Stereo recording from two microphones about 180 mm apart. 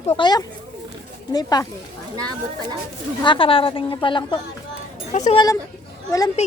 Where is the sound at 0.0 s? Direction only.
20° left (ahead or behind).